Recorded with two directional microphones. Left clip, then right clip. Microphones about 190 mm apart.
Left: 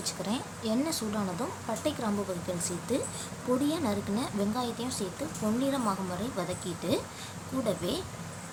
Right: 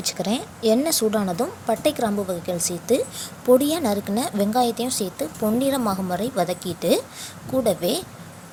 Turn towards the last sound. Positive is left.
turn(degrees=-35)  # may be behind; listen again after turning